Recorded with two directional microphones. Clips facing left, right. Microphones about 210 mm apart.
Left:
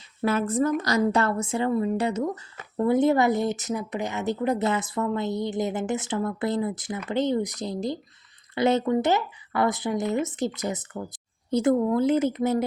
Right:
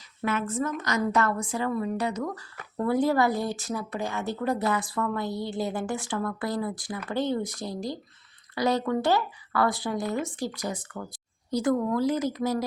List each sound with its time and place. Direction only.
0.2 s a woman's voice: 35° left (ahead or behind)